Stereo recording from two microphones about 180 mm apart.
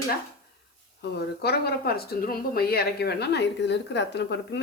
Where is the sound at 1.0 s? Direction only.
65° left (ahead or behind).